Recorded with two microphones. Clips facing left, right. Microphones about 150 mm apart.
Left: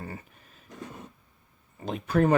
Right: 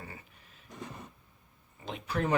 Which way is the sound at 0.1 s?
45° left (ahead or behind).